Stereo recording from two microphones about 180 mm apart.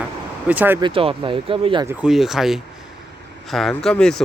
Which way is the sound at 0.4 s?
10° right (ahead or behind).